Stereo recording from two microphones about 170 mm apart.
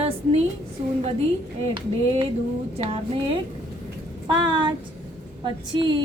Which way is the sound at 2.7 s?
35° right (ahead or behind).